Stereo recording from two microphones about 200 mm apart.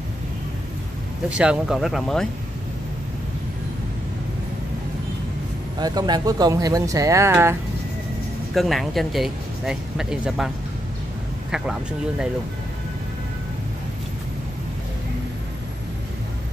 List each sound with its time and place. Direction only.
1.3 s speech: 5° right (ahead or behind)
5.8 s speech: 20° right (ahead or behind)
8.5 s speech: centre (ahead or behind)